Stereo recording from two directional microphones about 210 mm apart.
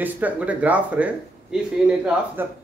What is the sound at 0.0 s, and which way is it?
A man's voice, 5° right (ahead or behind).